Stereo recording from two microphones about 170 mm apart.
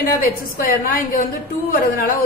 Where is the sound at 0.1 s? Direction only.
55° left (ahead or behind).